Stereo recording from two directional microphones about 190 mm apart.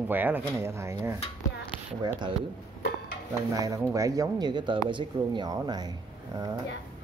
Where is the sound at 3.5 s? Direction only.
15° right (ahead or behind).